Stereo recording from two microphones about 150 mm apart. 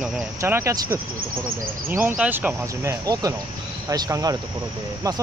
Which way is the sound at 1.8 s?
15° right (ahead or behind).